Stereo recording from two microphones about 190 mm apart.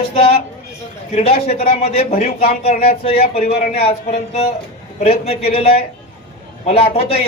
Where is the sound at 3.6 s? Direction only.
50° left (ahead or behind).